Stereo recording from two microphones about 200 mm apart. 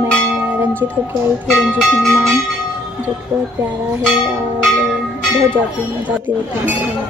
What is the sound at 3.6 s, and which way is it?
Speech, 10° right (ahead or behind).